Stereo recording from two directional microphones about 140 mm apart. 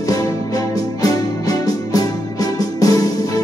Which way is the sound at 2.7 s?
25° left (ahead or behind).